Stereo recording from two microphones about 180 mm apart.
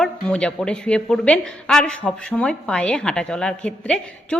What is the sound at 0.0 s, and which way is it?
A woman's voice, 5° left (ahead or behind).